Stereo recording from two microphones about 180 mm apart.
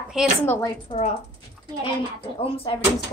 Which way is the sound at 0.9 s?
35° left (ahead or behind).